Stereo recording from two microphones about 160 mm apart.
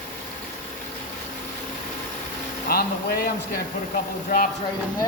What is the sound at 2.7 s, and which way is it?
Speech, 70° left (ahead or behind).